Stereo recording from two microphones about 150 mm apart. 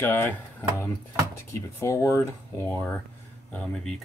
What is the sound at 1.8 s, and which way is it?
Speech, 20° left (ahead or behind).